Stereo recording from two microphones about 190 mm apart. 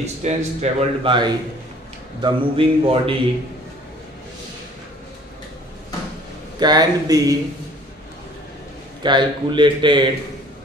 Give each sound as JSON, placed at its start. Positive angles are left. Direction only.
{"t": 0.0, "sound": "a man's voice", "side_deg": -35}
{"t": 6.6, "sound": "speech", "side_deg": -20}
{"t": 9.0, "sound": "speech", "side_deg": -25}